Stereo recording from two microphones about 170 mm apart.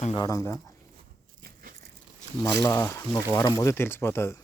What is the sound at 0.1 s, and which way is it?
Speech, 20° left (ahead or behind).